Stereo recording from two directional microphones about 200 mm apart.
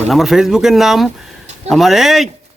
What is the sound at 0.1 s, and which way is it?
Speech, centre (ahead or behind).